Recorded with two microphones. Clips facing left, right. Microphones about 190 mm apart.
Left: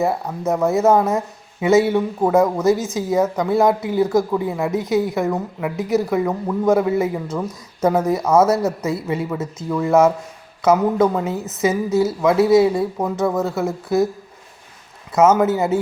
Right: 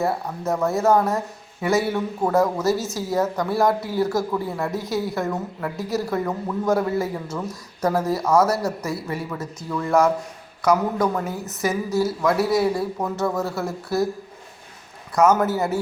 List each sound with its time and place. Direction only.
0.0 s speech: 20° left (ahead or behind)
15.1 s speech: 20° left (ahead or behind)